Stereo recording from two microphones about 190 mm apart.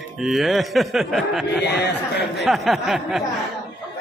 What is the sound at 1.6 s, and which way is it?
Speech, 60° left (ahead or behind).